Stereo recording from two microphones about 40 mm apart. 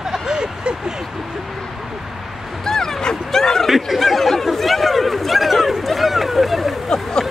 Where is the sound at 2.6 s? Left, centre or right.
Centre.